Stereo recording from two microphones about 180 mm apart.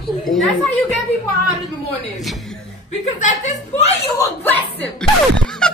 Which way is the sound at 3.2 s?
40° left (ahead or behind).